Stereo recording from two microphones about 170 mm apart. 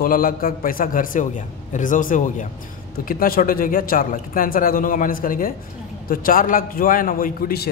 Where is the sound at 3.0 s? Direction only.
60° left (ahead or behind).